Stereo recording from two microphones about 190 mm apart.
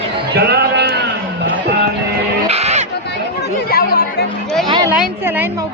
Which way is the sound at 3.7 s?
50° left (ahead or behind).